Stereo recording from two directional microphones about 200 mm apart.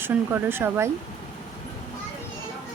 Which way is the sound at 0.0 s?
10° right (ahead or behind).